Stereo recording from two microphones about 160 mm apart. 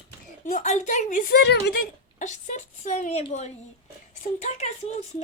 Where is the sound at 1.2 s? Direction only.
90° left.